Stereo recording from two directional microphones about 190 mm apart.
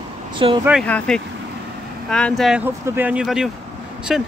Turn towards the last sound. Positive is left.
turn(degrees=0)  # may be behind; listen again after turning